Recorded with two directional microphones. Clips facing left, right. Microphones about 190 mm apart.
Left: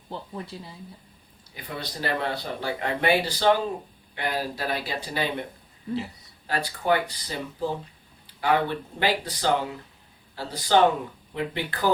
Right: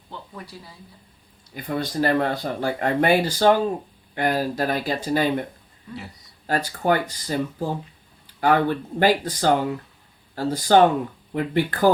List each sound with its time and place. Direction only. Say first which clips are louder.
0.1 s speech: left 3 dB; 25° left (ahead or behind)
1.5 s speech: right 10 dB; 45° right (ahead or behind)
6.5 s speech: right 3 dB; 45° right (ahead or behind)